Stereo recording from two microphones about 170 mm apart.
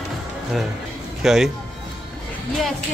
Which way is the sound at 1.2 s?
Centre (ahead or behind).